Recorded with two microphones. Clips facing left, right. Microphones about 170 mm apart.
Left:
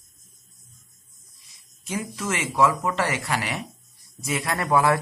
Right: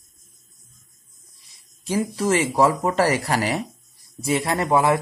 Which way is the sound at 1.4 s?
30° right (ahead or behind).